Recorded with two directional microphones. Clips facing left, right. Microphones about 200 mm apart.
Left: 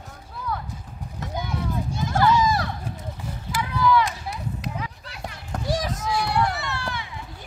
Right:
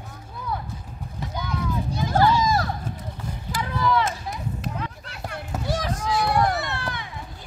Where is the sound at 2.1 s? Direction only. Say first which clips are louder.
Even; 35° right (ahead or behind).